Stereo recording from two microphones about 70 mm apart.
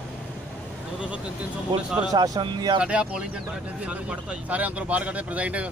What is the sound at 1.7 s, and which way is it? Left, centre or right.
Speech, right.